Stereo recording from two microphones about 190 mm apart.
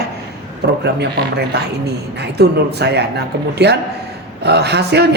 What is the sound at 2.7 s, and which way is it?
A woman's voice, 60° right (ahead or behind).